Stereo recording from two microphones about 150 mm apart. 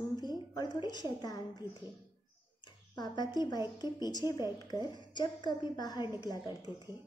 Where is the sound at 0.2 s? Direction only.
30° left (ahead or behind).